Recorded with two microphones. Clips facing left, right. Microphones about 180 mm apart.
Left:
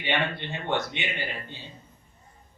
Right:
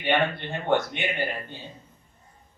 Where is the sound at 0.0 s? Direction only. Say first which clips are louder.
Right 4 dB; 50° right (ahead or behind).